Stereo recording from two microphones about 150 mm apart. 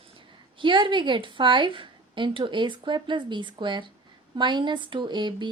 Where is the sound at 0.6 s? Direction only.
35° right (ahead or behind).